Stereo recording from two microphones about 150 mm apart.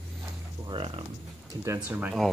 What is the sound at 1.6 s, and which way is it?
Speech, 15° right (ahead or behind).